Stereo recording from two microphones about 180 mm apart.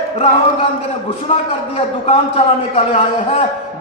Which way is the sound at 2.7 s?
35° left (ahead or behind).